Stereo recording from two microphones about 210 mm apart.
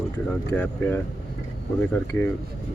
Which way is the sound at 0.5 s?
10° left (ahead or behind).